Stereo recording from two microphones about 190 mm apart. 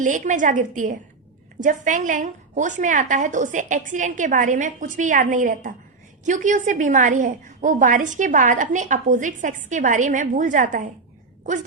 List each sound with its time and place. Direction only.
0.0 s a woman's voice: 40° right (ahead or behind)